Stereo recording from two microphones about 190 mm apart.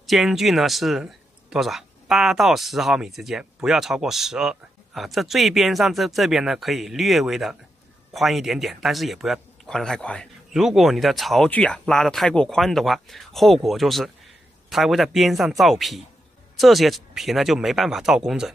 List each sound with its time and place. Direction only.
0.0 s speech: centre (ahead or behind)